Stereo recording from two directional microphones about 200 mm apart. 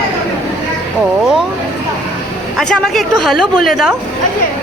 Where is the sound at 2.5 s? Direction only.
Centre (ahead or behind).